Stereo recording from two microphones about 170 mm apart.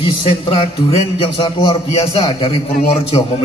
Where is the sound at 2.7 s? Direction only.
50° left (ahead or behind).